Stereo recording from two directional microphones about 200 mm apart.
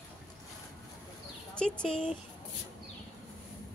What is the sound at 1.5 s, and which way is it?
Speech, 5° left (ahead or behind).